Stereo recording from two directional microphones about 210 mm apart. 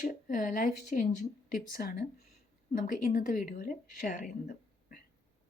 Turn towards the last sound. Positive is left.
turn(degrees=40)  # may be behind; listen again after turning